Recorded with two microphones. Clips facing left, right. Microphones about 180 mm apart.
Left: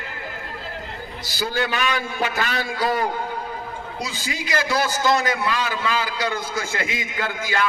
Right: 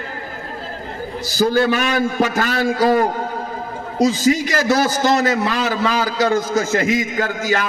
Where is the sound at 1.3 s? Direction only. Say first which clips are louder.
Right 9 dB; 45° right (ahead or behind).